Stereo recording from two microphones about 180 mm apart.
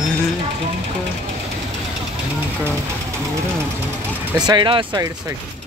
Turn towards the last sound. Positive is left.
turn(degrees=-25)  # may be behind; listen again after turning